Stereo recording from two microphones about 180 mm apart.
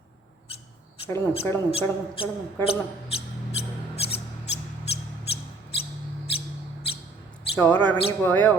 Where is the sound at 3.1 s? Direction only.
35° left (ahead or behind).